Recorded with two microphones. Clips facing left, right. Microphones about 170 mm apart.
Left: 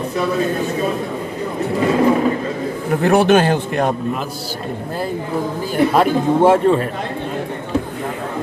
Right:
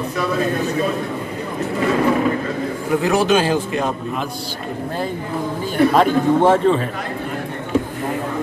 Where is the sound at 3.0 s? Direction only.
60° left (ahead or behind).